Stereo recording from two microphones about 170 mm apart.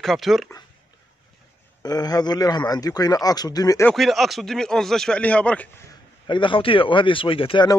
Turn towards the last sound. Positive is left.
turn(degrees=30)  # may be behind; listen again after turning